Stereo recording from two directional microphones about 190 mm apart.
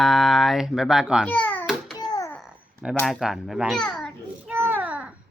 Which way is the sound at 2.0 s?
20° left (ahead or behind).